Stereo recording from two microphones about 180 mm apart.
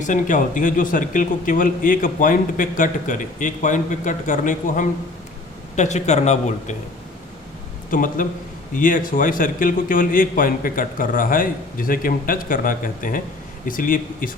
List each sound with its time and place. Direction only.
0.0 s speech: 45° left (ahead or behind)
7.9 s speech: 50° left (ahead or behind)